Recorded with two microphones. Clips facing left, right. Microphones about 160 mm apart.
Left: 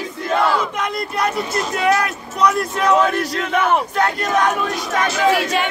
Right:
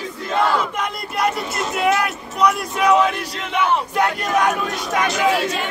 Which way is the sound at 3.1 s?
45° left (ahead or behind).